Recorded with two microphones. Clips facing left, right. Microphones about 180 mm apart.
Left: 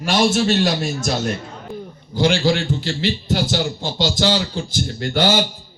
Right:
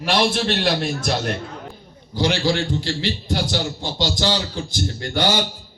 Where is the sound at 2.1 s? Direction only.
50° left (ahead or behind).